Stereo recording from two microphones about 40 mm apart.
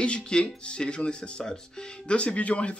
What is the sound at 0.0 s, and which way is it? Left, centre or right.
Speech, left.